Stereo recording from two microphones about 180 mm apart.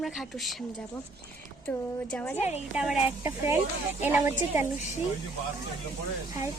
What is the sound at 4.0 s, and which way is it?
Speech, 10° right (ahead or behind).